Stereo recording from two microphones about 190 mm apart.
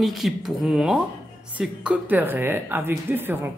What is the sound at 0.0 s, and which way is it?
A woman's voice, centre (ahead or behind).